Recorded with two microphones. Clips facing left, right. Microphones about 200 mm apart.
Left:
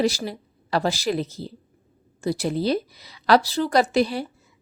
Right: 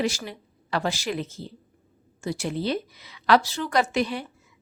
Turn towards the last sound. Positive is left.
turn(degrees=35)  # may be behind; listen again after turning